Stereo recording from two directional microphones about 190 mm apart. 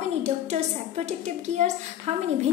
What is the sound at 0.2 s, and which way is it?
A woman's voice, 35° right (ahead or behind).